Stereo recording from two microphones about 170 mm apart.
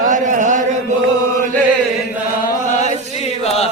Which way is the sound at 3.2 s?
40° left (ahead or behind).